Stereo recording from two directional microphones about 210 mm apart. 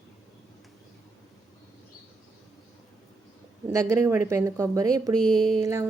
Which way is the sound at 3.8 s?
10° right (ahead or behind).